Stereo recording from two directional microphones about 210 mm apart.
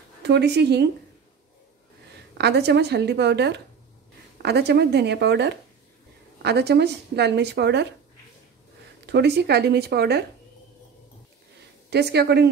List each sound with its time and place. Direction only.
0.2 s speech: 55° right (ahead or behind)
2.3 s speech: 55° right (ahead or behind)
9.0 s speech: 50° right (ahead or behind)
11.9 s speech: 50° right (ahead or behind)